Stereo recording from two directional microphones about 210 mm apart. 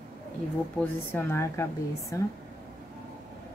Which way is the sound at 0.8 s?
10° left (ahead or behind).